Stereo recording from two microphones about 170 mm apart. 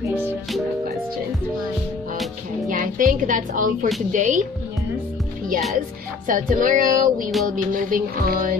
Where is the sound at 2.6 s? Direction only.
55° right (ahead or behind).